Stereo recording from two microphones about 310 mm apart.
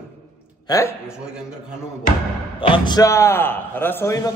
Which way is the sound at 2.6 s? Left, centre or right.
Centre.